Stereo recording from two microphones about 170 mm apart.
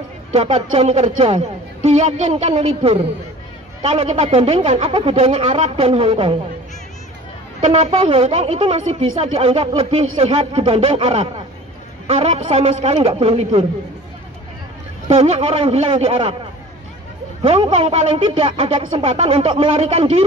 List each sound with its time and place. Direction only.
0.3 s speech: 35° right (ahead or behind)
7.6 s speech: 35° right (ahead or behind)
15.0 s speech: 35° right (ahead or behind)
17.4 s speech: 30° right (ahead or behind)